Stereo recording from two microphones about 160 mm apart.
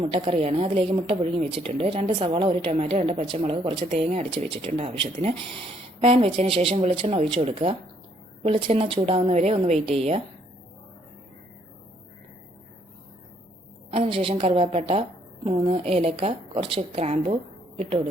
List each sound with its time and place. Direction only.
0.0 s speech: 35° right (ahead or behind)
13.9 s a woman's voice: 40° right (ahead or behind)